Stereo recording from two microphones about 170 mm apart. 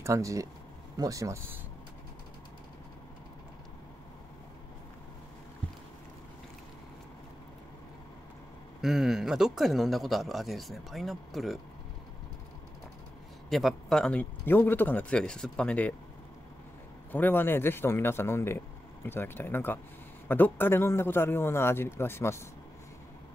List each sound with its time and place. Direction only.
0.0 s speech: 20° right (ahead or behind)
8.8 s a man's voice: centre (ahead or behind)
13.5 s a man's voice: centre (ahead or behind)
17.1 s a man's voice: 10° left (ahead or behind)